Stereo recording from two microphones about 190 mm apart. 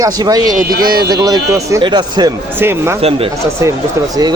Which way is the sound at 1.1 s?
20° right (ahead or behind).